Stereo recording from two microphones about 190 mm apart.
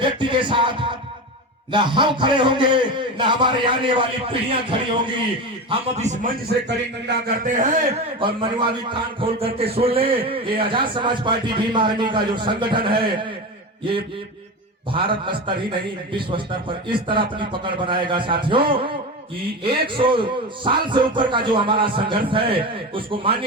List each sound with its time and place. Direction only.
0.0 s music: 25° right (ahead or behind)
1.7 s a man's voice: 25° right (ahead or behind)
5.6 s a man's voice: 35° right (ahead or behind)
6.7 s a man's voice: 65° right (ahead or behind)
7.4 s a man's voice: 45° right (ahead or behind)
8.9 s a man's voice: 25° right (ahead or behind)
14.9 s a man's voice: 25° right (ahead or behind)